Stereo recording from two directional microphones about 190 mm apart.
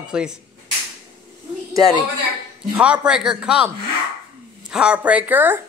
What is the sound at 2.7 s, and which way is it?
A woman's voice, 5° right (ahead or behind).